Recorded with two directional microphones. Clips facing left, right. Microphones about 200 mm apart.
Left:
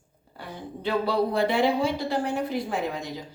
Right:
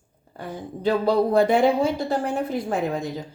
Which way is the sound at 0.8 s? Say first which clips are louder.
Right 5 dB; 45° right (ahead or behind).